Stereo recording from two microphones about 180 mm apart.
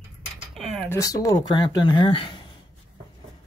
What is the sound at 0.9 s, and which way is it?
Speech, 20° left (ahead or behind).